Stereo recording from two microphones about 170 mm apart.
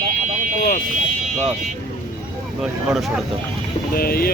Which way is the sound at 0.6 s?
50° left (ahead or behind).